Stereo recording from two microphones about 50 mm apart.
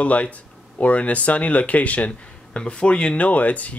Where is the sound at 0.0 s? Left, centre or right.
Left.